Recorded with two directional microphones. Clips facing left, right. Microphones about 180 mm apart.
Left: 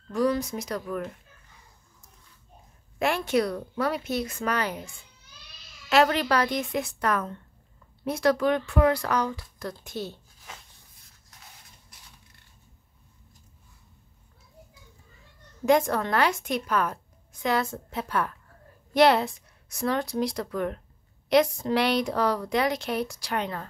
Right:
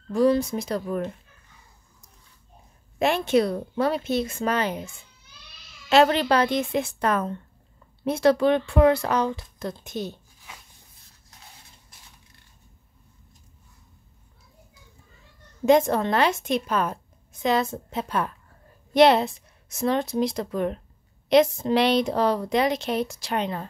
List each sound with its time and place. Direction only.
0.1 s a woman's voice: 30° right (ahead or behind)
3.0 s a woman's voice: 25° right (ahead or behind)
15.6 s a woman's voice: 25° right (ahead or behind)